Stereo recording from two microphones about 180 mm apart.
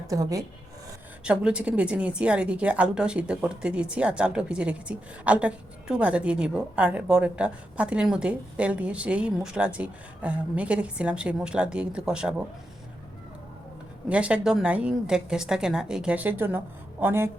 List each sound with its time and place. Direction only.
0.1 s speech: 20° right (ahead or behind)
1.2 s a woman's voice: 5° right (ahead or behind)
14.1 s a woman's voice: 5° right (ahead or behind)